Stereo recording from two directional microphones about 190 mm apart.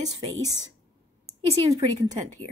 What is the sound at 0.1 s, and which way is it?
Speech, 20° right (ahead or behind).